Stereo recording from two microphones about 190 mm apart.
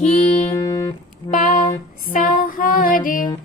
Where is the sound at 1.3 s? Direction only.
45° left (ahead or behind).